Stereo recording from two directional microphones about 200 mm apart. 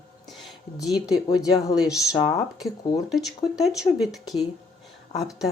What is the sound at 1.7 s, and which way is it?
Speech, centre (ahead or behind).